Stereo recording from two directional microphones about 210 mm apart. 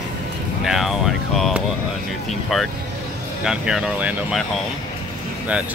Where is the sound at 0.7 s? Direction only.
Centre (ahead or behind).